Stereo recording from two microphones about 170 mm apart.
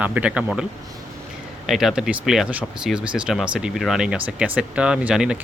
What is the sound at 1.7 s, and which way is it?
Speech, centre (ahead or behind).